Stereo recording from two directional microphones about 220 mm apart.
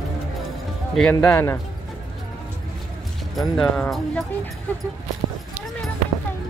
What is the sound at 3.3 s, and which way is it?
Speech, 5° left (ahead or behind).